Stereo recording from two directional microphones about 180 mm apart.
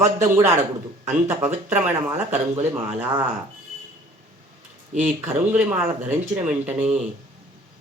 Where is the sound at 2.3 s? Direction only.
40° right (ahead or behind).